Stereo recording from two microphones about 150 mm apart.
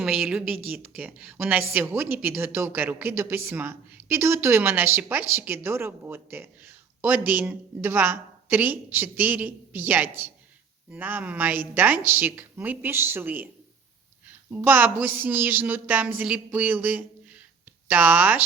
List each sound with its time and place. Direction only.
0.0 s a woman's voice: 5° right (ahead or behind)
14.5 s a woman's voice: 10° right (ahead or behind)